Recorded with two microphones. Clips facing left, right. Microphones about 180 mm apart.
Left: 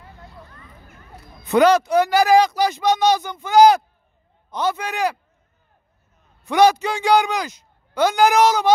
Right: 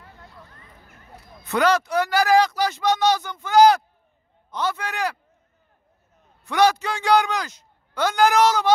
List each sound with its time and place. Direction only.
1.4 s speech: 15° left (ahead or behind)
6.4 s speech: 15° left (ahead or behind)